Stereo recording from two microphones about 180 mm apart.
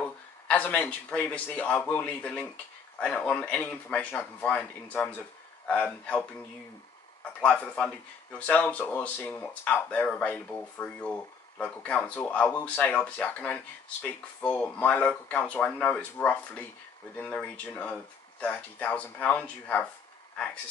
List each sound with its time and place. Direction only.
0.0 s speech: 10° left (ahead or behind)
7.3 s speech: 5° left (ahead or behind)